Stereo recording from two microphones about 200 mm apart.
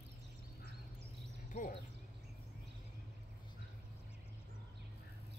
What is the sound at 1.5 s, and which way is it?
Speech, 40° left (ahead or behind).